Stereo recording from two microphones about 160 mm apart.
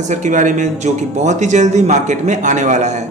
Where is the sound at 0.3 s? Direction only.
55° right (ahead or behind).